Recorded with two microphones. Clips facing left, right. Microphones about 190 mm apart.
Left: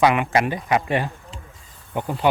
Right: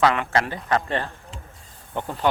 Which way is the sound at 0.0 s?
15° left (ahead or behind).